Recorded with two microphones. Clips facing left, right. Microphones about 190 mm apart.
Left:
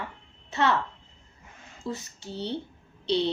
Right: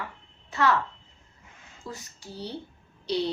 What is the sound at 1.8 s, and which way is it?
Speech, 25° left (ahead or behind).